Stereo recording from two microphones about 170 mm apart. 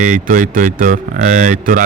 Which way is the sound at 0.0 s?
50° right (ahead or behind).